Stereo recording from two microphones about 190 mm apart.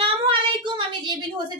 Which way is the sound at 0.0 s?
25° right (ahead or behind).